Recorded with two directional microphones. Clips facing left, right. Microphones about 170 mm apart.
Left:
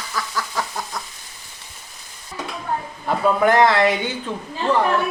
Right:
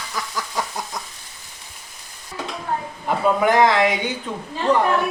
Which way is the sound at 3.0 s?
15° right (ahead or behind).